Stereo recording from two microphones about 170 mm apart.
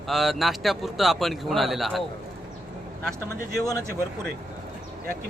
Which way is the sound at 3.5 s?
20° left (ahead or behind).